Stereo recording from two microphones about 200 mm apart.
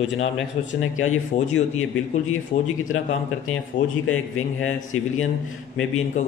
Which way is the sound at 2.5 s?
35° left (ahead or behind).